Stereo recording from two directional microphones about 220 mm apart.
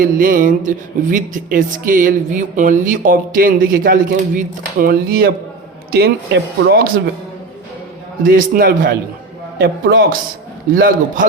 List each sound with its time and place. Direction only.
0.0 s speech: 40° right (ahead or behind)
8.2 s speech: 40° right (ahead or behind)